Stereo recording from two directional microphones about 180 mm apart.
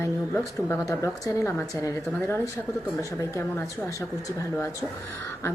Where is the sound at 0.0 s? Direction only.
15° left (ahead or behind).